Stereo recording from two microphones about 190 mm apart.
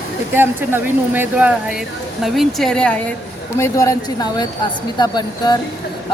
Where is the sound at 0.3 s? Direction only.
10° right (ahead or behind); by 3.0 s 5° left (ahead or behind).